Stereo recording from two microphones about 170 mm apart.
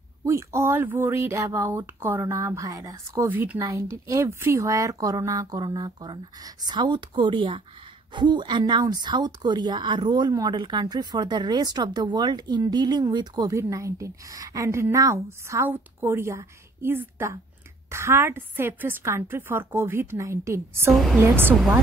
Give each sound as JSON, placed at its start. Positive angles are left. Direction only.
{"t": 0.2, "sound": "a woman's voice", "side_deg": -15}
{"t": 20.9, "sound": "a woman's voice", "side_deg": 0}
{"t": 21.2, "sound": "speech", "side_deg": -10}